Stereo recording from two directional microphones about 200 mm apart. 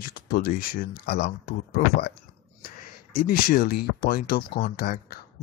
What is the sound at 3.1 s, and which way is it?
Speech, 45° left (ahead or behind).